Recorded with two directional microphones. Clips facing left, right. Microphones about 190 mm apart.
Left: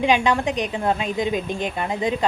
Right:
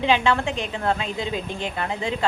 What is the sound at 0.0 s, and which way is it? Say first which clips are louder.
A woman's voice: left 2 dB; 15° left (ahead or behind).